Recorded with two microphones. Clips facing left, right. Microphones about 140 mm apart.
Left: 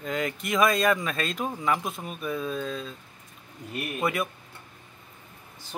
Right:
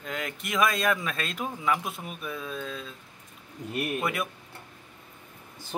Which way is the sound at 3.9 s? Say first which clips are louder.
Left 6 dB; centre (ahead or behind).